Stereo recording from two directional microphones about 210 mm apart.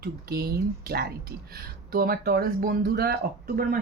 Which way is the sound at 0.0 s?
45° right (ahead or behind).